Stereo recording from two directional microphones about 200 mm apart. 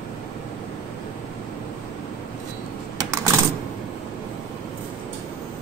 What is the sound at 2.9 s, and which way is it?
Typewriter, 15° right (ahead or behind).